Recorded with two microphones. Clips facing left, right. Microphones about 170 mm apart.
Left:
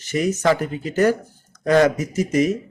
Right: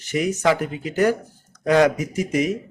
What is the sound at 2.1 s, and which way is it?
Speech, 40° left (ahead or behind).